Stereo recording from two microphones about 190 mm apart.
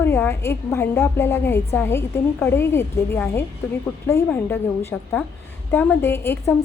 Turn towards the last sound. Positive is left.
turn(degrees=10)  # may be behind; listen again after turning